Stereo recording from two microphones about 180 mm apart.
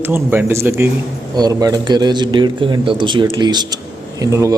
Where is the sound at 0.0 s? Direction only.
10° right (ahead or behind).